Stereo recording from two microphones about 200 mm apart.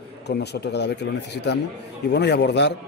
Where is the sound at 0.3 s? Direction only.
55° left (ahead or behind).